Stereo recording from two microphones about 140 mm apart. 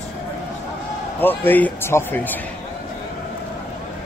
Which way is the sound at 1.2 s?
15° left (ahead or behind).